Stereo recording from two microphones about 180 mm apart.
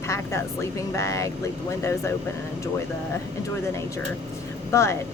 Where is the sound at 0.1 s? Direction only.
15° left (ahead or behind).